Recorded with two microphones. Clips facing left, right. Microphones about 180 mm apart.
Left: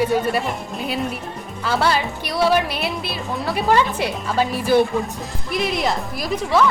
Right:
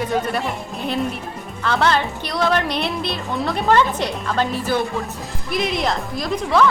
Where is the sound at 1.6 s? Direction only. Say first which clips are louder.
Right 1 dB; 5° left (ahead or behind).